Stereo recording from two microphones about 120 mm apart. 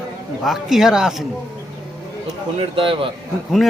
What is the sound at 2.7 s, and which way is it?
Speech, 45° right (ahead or behind).